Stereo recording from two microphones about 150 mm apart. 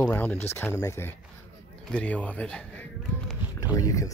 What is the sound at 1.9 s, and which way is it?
Speech, 5° left (ahead or behind).